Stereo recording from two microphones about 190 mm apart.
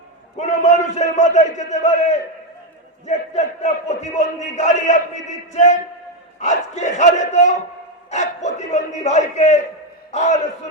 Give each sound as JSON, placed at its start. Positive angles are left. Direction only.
{"t": 0.3, "sound": "a man's voice", "side_deg": 40}